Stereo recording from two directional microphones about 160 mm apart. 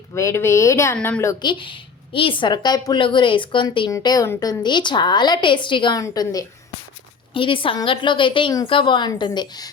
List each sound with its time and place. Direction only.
0.1 s speech: 20° left (ahead or behind)
0.9 s speech: 5° left (ahead or behind)
1.2 s a woman's voice: 25° left (ahead or behind)
7.3 s a woman's voice: 30° left (ahead or behind)